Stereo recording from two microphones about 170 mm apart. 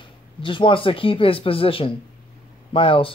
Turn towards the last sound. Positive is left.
turn(degrees=30)  # may be behind; listen again after turning